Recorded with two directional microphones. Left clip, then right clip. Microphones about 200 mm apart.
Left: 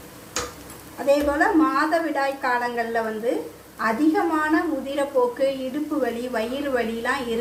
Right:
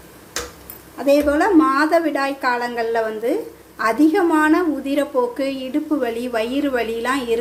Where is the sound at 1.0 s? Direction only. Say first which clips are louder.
Right 4 dB; 40° right (ahead or behind).